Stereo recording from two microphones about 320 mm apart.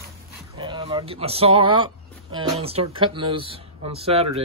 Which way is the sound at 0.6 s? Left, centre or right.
Centre.